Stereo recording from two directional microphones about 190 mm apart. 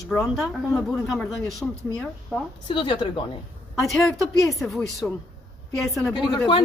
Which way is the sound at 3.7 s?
Centre (ahead or behind).